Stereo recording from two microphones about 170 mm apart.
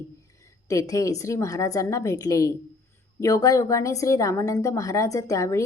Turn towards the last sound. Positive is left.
turn(degrees=20)  # may be behind; listen again after turning